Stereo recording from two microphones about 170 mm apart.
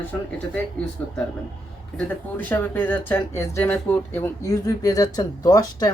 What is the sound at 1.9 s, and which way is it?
Speech, 10° left (ahead or behind).